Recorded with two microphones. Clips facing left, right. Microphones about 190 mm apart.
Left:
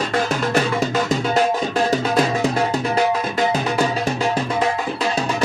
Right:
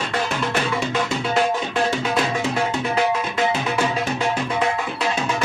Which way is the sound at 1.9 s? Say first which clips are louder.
Left 4 dB; 40° left (ahead or behind).